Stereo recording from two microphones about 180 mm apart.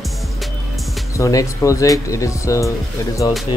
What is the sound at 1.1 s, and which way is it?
Speech, 15° left (ahead or behind).